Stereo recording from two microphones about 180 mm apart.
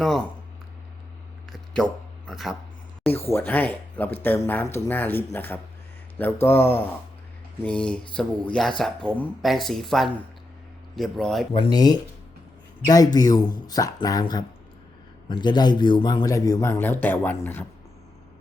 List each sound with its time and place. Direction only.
1.5 s a sound: centre (ahead or behind)
3.1 s speech: 15° left (ahead or behind)
11.5 s speech: 25° left (ahead or behind)